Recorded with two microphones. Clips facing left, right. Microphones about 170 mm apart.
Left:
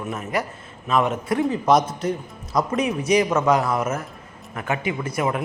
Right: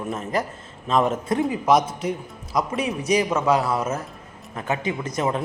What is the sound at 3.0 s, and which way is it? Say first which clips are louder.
Speech: left 2 dB; 35° right (ahead or behind).